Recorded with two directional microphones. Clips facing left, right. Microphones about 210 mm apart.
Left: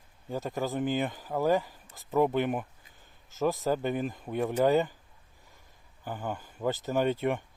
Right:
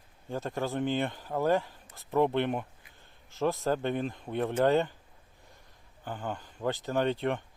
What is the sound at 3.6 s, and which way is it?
Speech, 5° left (ahead or behind).